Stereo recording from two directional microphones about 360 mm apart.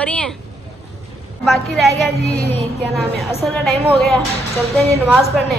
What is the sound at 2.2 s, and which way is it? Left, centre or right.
Child singing, centre.